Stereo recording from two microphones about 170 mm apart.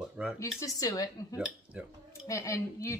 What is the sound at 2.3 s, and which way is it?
Speech, 15° left (ahead or behind).